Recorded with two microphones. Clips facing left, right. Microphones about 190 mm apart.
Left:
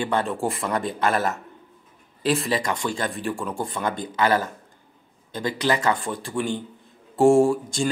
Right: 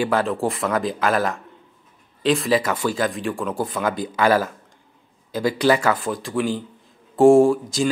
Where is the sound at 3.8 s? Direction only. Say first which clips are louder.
Right 3 dB; 90° right.